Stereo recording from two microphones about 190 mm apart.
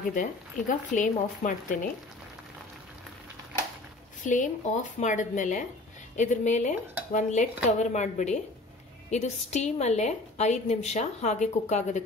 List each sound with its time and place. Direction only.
0.1 s speech: 45° left (ahead or behind)
4.2 s a woman's voice: 40° left (ahead or behind)